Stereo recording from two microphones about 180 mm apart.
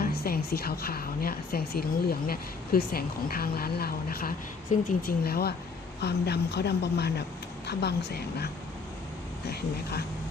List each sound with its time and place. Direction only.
0.0 s a woman's voice: 60° left (ahead or behind)